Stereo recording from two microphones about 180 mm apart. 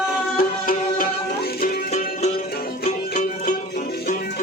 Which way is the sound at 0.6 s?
50° left (ahead or behind).